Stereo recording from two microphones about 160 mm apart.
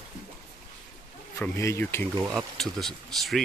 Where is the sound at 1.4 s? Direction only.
15° left (ahead or behind).